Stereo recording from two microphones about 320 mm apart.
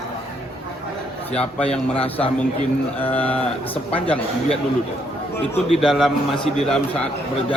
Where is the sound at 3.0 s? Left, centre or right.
Centre.